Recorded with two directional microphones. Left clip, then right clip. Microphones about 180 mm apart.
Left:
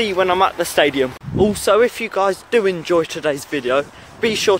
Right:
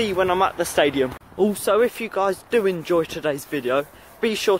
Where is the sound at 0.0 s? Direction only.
5° right (ahead or behind).